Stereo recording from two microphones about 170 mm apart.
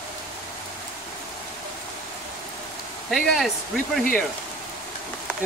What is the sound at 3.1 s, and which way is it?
Speech, centre (ahead or behind).